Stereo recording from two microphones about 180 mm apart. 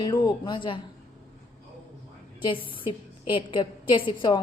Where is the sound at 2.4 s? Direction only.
25° left (ahead or behind).